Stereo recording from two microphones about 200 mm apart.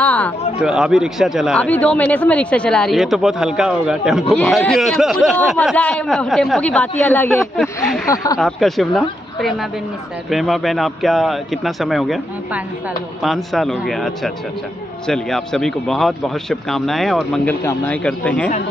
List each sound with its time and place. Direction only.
0.0 s a sound: 5° left (ahead or behind)
0.6 s a man's voice: 5° right (ahead or behind)
8.1 s speech: 20° left (ahead or behind)
8.4 s a man's voice: centre (ahead or behind)